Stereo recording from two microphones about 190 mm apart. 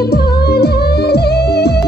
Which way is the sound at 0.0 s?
55° left (ahead or behind).